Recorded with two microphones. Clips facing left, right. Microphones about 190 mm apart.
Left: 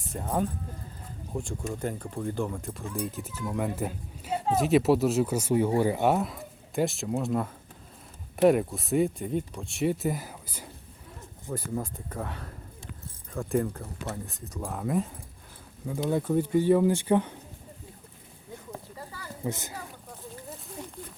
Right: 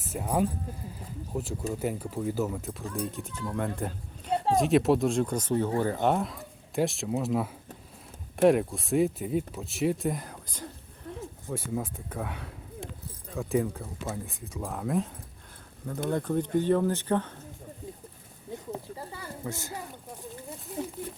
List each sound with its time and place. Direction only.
0.0 s speech: 5° right (ahead or behind); by 17.3 s 15° left (ahead or behind)
18.5 s a sound: 25° right (ahead or behind)
19.5 s speech: 20° left (ahead or behind)